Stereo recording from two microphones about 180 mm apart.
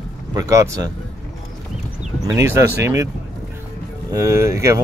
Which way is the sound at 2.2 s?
15° right (ahead or behind).